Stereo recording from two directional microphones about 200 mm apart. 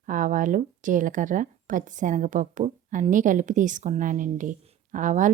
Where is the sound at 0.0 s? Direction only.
40° right (ahead or behind).